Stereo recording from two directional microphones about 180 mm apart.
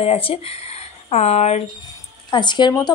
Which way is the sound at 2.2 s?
25° left (ahead or behind).